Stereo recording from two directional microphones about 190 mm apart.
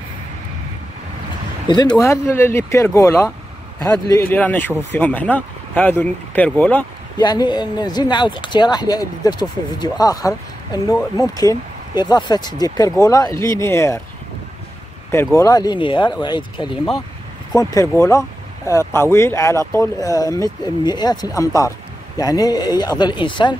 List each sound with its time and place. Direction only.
1.7 s speech: 20° left (ahead or behind)
7.2 s speech: 20° left (ahead or behind)
15.3 s speech: 20° left (ahead or behind)